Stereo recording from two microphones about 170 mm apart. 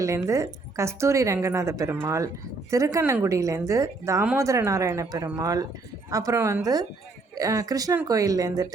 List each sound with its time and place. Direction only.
0.0 s a woman's voice: 20° right (ahead or behind)